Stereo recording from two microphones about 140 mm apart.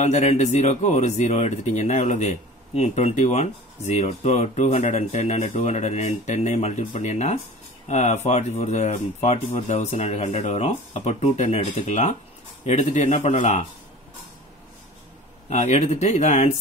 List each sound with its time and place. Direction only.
0.0 s speech: 50° left (ahead or behind)
15.5 s speech: 55° left (ahead or behind)